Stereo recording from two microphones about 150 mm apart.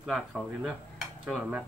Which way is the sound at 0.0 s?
Centre (ahead or behind).